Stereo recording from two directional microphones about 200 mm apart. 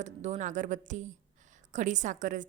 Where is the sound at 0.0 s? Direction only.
35° right (ahead or behind).